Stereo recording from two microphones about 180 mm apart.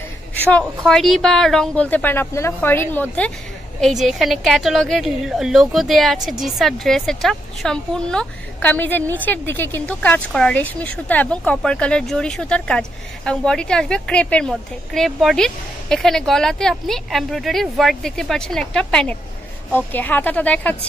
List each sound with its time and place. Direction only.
0.3 s a woman's voice: 10° left (ahead or behind)